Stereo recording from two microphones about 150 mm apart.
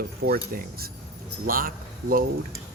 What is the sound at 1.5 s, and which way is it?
Speech, 70° right (ahead or behind).